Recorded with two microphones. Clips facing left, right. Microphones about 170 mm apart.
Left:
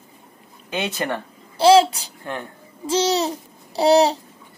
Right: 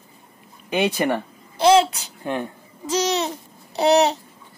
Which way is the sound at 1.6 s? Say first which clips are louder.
Left 2 dB; 30° left (ahead or behind).